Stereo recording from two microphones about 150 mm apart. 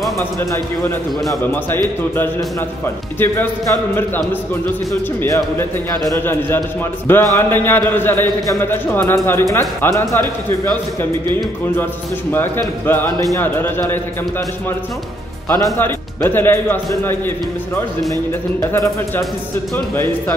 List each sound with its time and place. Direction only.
0.2 s a man's voice: 15° left (ahead or behind)
3.2 s a man's voice: 15° left (ahead or behind)
12.3 s a man's voice: 15° left (ahead or behind)
15.6 s a man's voice: 20° left (ahead or behind)
18.6 s a man's voice: 20° left (ahead or behind)